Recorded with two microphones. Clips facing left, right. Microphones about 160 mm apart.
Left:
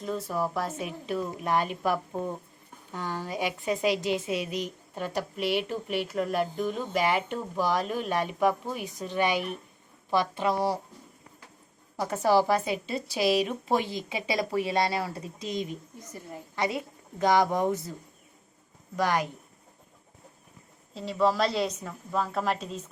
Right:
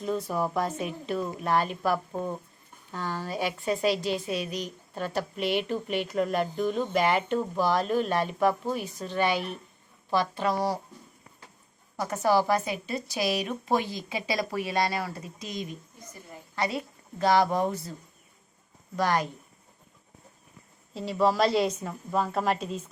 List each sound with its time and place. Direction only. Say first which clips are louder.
0.0 s a woman's voice: right 2 dB; centre (ahead or behind); by 10.8 s 25° left (ahead or behind)
12.0 s a woman's voice: left 1 dB; 30° left (ahead or behind)
18.9 s a woman's voice: even; 15° left (ahead or behind)
20.9 s speech: right 1 dB; centre (ahead or behind)